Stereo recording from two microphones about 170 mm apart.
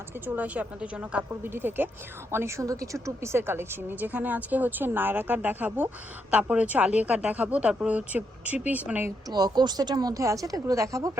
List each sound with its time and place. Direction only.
0.3 s a woman's voice: 10° right (ahead or behind)
9.3 s speech: 25° right (ahead or behind)